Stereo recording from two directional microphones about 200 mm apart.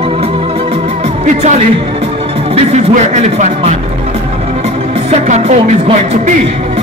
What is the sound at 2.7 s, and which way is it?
Music, 35° right (ahead or behind).